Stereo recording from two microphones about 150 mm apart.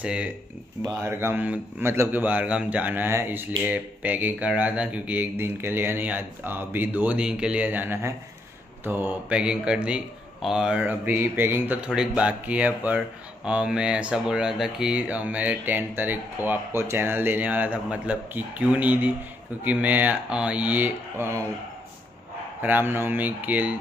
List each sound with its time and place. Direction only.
0.0 s speech: 5° right (ahead or behind)
22.6 s speech: 10° right (ahead or behind)